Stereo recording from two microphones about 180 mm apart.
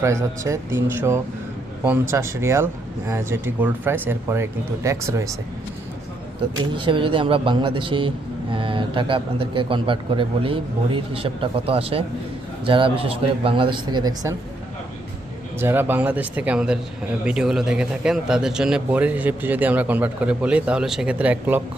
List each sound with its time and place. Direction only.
0.0 s a man's voice: 15° right (ahead or behind)
6.6 s speech: 25° right (ahead or behind)
15.6 s a man's voice: 10° right (ahead or behind)